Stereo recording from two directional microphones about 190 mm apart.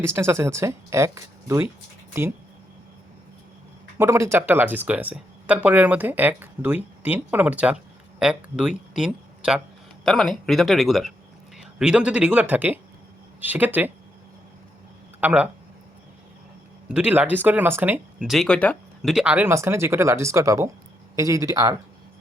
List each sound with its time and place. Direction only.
0.0 s speech: 15° right (ahead or behind)
3.9 s speech: 15° right (ahead or behind)
15.2 s speech: 5° right (ahead or behind)
16.9 s speech: 5° right (ahead or behind)